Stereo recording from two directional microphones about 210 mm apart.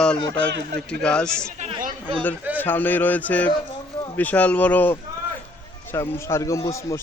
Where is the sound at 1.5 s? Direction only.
35° right (ahead or behind).